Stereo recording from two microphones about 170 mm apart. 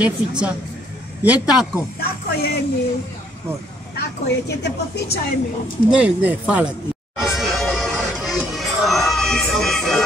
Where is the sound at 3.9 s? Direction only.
75° left (ahead or behind).